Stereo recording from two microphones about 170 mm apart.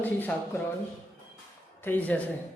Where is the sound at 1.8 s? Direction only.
10° left (ahead or behind).